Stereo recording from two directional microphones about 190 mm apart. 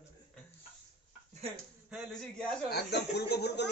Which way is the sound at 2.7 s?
60° left (ahead or behind).